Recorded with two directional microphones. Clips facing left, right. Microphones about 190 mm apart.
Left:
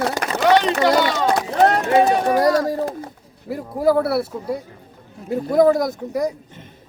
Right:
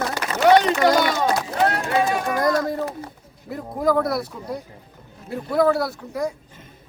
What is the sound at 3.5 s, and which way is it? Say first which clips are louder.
Speech: left 3 dB; 5° left (ahead or behind).